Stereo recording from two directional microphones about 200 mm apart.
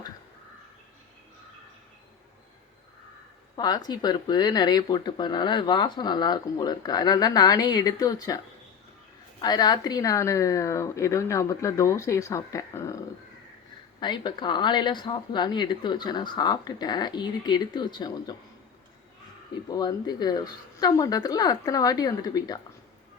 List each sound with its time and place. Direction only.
3.5 s speech: 20° left (ahead or behind)
9.4 s a woman's voice: 20° left (ahead or behind)
14.0 s speech: 20° left (ahead or behind)
19.7 s speech: 20° left (ahead or behind)